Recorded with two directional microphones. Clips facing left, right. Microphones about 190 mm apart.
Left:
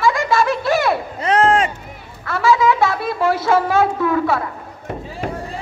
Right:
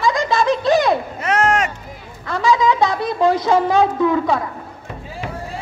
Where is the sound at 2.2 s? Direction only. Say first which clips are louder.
Left 1 dB; 15° right (ahead or behind).